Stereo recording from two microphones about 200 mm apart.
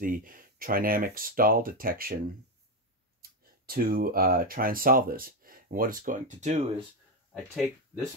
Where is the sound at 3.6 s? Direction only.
45° right (ahead or behind).